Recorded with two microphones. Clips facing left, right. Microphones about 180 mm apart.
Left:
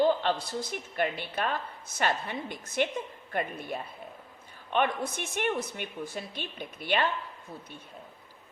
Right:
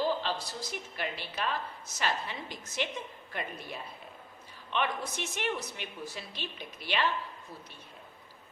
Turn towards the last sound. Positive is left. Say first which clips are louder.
# left 4 dB
turn(degrees=50)  # may be behind; listen again after turning